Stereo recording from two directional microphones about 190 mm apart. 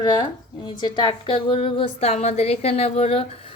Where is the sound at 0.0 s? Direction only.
20° left (ahead or behind).